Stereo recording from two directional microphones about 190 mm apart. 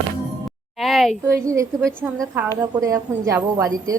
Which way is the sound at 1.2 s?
15° right (ahead or behind).